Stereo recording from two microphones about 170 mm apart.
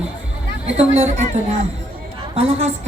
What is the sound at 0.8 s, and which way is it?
Speech, 40° right (ahead or behind).